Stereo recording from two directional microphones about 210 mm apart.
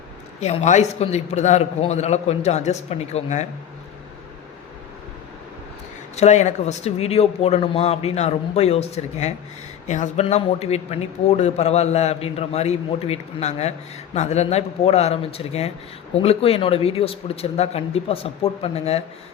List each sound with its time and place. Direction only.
0.3 s speech: 30° left (ahead or behind)
6.1 s speech: 35° left (ahead or behind)